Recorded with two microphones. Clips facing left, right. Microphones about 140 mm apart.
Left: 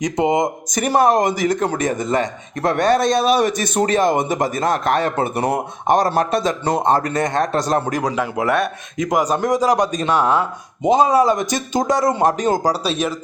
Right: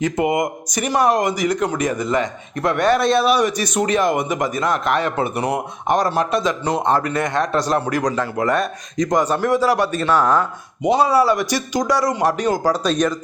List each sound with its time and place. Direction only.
0.0 s speech: 20° left (ahead or behind)
0.7 s speech: 45° left (ahead or behind)
1.6 s a man's voice: 30° left (ahead or behind)
7.9 s a man's voice: 10° left (ahead or behind)
12.2 s speech: 40° left (ahead or behind)
12.5 s a man's voice: 10° left (ahead or behind)